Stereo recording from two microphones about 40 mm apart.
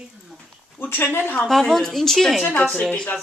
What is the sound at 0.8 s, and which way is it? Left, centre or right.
Speech, left.